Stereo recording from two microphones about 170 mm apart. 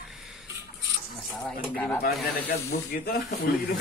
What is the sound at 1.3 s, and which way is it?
Speech, 5° left (ahead or behind).